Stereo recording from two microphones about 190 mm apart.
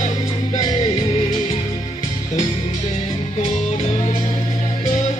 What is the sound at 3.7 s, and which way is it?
Music, 35° left (ahead or behind).